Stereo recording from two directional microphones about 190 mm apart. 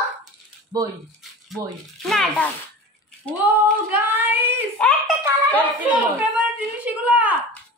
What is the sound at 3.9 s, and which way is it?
Child singing, 10° right (ahead or behind).